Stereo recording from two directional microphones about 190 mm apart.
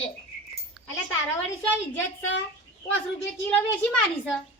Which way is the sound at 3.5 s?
5° left (ahead or behind).